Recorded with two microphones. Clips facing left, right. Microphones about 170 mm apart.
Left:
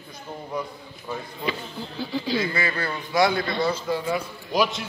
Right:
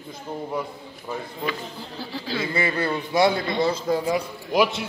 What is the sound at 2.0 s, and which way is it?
Speech, 5° right (ahead or behind).